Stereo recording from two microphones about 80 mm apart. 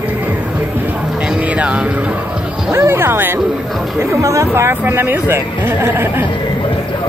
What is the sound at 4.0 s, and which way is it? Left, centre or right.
Speech, right.